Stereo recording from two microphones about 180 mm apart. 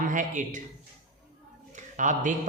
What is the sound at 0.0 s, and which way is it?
Speech, 45° right (ahead or behind).